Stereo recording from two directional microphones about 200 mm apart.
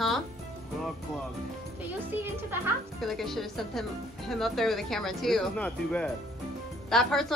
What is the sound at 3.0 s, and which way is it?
Speech, centre (ahead or behind).